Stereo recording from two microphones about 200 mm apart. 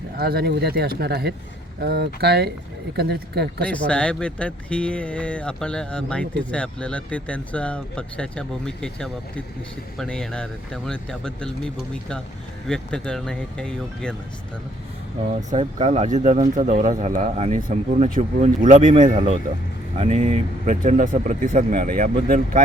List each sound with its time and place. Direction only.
0.2 s speech: 50° right (ahead or behind)
3.7 s speech: 5° left (ahead or behind)
15.4 s speech: 30° right (ahead or behind)